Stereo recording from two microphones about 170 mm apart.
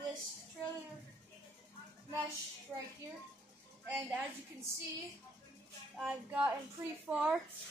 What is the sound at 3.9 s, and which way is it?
Speech, 10° right (ahead or behind).